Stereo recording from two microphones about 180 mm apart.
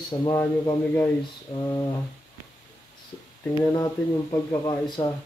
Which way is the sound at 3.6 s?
20° left (ahead or behind).